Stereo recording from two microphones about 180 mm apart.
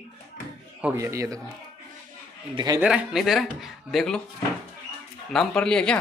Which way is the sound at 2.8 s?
5° right (ahead or behind).